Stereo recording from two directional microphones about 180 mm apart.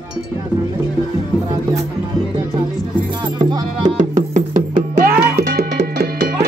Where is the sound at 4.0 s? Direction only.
45° right (ahead or behind).